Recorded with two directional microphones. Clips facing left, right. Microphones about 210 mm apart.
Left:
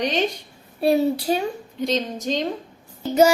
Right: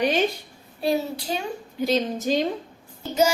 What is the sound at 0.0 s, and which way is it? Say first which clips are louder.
Speech: right 1 dB; 5° right (ahead or behind).